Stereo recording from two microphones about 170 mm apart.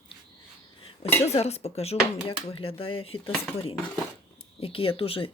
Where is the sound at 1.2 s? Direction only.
40° left (ahead or behind).